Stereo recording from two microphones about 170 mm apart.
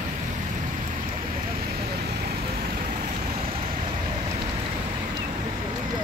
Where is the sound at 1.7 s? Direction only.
70° right (ahead or behind).